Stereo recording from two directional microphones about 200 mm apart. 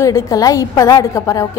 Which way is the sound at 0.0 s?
15° left (ahead or behind).